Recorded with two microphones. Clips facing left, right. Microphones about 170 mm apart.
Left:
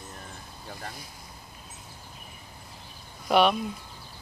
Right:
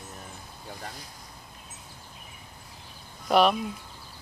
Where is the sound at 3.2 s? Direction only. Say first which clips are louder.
Even; centre (ahead or behind).